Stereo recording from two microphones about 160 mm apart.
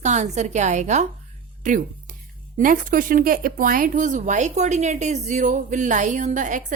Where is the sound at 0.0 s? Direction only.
45° right (ahead or behind).